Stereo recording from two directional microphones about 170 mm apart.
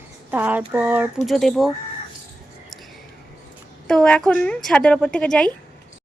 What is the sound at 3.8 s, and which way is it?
A woman's voice, 5° left (ahead or behind).